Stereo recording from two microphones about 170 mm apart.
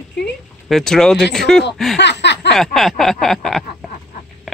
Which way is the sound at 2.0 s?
90° left.